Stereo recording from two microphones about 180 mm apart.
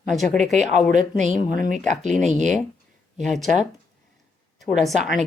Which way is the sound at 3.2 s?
Centre (ahead or behind).